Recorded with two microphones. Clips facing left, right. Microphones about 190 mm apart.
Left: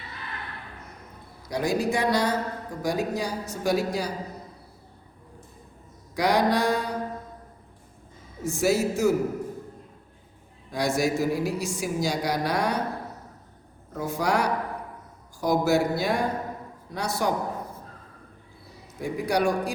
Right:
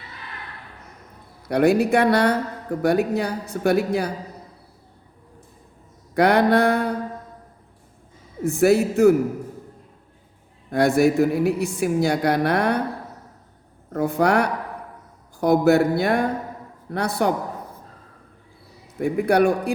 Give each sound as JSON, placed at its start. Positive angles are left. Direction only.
{"t": 1.5, "sound": "speech", "side_deg": -60}
{"t": 6.1, "sound": "speech", "side_deg": -60}
{"t": 8.4, "sound": "speech", "side_deg": -60}
{"t": 10.7, "sound": "speech", "side_deg": -60}
{"t": 13.9, "sound": "speech", "side_deg": -60}
{"t": 18.9, "sound": "speech", "side_deg": -60}